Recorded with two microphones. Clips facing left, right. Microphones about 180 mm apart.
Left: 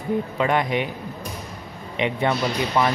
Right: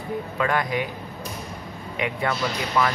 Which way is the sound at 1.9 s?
25° left (ahead or behind).